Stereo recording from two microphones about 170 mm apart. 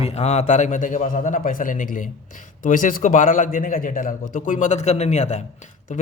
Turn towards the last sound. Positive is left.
turn(degrees=45)  # may be behind; listen again after turning